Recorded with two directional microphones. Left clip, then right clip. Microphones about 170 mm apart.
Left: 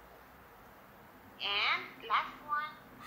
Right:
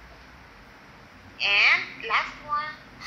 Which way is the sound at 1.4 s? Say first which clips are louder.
Right 12 dB; 45° right (ahead or behind).